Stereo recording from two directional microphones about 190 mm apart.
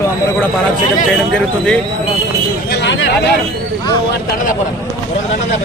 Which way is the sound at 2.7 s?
70° left (ahead or behind).